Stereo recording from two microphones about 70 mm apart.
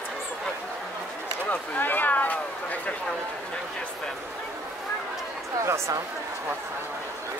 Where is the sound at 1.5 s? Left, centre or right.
Left.